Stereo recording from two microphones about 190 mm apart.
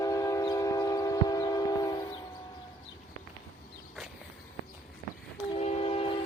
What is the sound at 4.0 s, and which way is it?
Walk, centre (ahead or behind).